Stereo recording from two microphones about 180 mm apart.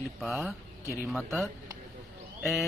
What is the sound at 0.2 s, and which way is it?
Speech, centre (ahead or behind).